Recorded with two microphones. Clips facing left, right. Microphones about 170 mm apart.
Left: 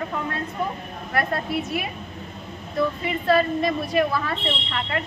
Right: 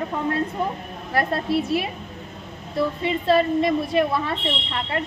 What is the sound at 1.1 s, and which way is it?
A woman's voice, 30° right (ahead or behind).